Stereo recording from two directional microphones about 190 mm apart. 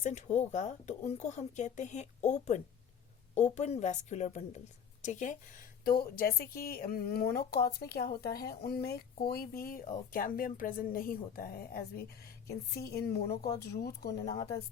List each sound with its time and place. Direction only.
0.0 s a woman's voice: 40° left (ahead or behind); by 14.1 s 55° left (ahead or behind)
14.3 s a woman's voice: 20° left (ahead or behind)